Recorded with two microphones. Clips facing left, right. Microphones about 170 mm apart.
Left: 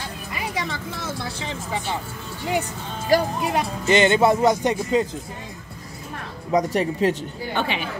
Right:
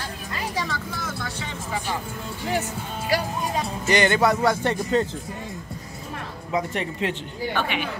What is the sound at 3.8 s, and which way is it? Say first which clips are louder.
Speech: left 3 dB; 20° left (ahead or behind).